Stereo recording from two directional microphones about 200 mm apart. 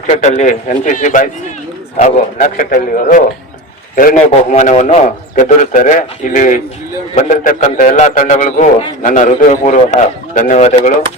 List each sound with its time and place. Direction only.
0.1 s a man's voice: 35° left (ahead or behind)